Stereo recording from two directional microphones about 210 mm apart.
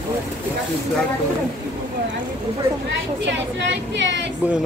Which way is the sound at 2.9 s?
60° right (ahead or behind).